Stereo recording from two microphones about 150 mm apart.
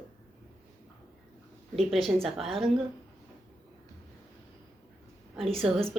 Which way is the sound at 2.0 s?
Centre (ahead or behind).